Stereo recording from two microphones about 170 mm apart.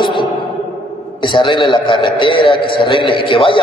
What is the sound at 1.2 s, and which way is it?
A man's voice, 30° left (ahead or behind).